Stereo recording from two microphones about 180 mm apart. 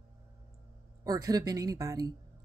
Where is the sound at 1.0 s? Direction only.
20° right (ahead or behind).